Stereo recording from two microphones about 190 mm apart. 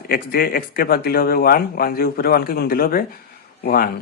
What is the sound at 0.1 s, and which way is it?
Speech, 50° left (ahead or behind).